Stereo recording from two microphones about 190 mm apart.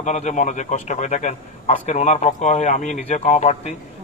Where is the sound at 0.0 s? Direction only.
40° left (ahead or behind).